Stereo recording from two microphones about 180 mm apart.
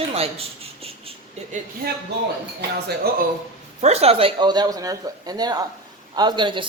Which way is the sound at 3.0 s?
60° right (ahead or behind).